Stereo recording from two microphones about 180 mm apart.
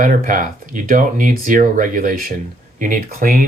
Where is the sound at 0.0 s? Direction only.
50° right (ahead or behind).